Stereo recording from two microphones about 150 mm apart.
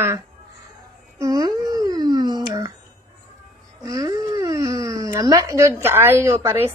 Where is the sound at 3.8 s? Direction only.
20° right (ahead or behind).